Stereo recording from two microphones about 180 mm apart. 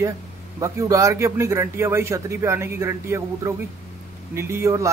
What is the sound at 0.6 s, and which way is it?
A man's voice, 15° right (ahead or behind).